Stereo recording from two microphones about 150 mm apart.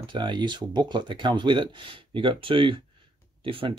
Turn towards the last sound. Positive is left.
turn(degrees=-35)  # may be behind; listen again after turning